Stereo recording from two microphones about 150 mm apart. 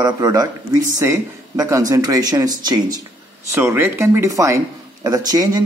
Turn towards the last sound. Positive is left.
turn(degrees=-25)  # may be behind; listen again after turning